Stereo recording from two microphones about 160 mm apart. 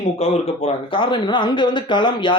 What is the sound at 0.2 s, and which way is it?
Speech, 40° left (ahead or behind).